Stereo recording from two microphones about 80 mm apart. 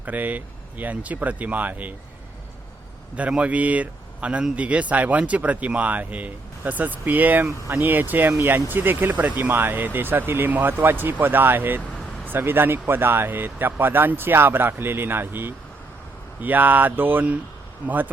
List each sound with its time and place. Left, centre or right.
0.0 s speech: centre
3.2 s a man's voice: centre